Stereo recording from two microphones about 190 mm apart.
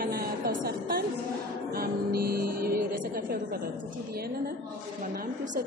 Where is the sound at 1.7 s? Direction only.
50° right (ahead or behind).